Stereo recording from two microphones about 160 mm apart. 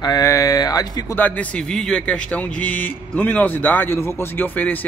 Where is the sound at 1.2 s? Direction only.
10° left (ahead or behind).